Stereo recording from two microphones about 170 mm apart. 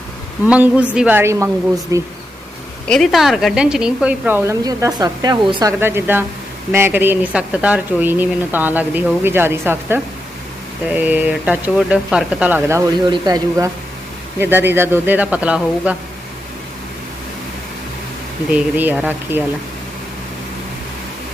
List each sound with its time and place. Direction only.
0.4 s speech: 10° right (ahead or behind)
2.9 s a woman's voice: centre (ahead or behind); by 5.7 s 25° right (ahead or behind)
5.8 s speech: 15° right (ahead or behind)
18.5 s speech: 10° right (ahead or behind)